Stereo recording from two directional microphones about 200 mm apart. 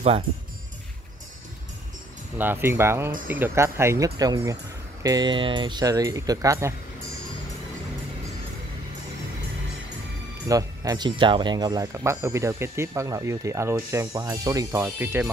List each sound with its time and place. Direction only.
2.3 s speech: 10° right (ahead or behind)
10.5 s speech: 15° right (ahead or behind)